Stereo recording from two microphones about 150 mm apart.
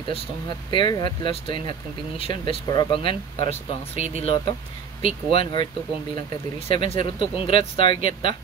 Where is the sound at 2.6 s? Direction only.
25° left (ahead or behind).